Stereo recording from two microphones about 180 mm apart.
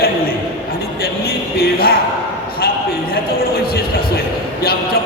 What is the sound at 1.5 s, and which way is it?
Speech, 55° left (ahead or behind).